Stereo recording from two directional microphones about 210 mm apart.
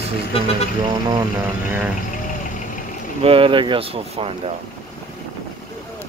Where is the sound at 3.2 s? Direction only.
25° right (ahead or behind).